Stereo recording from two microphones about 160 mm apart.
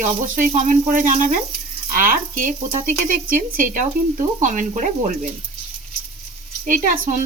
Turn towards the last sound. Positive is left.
turn(degrees=-60)  # may be behind; listen again after turning